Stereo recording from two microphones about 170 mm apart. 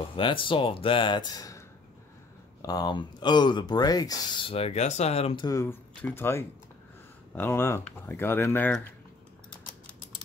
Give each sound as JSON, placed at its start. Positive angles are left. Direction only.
{"t": 0.1, "sound": "speech", "side_deg": 30}
{"t": 2.6, "sound": "speech", "side_deg": 25}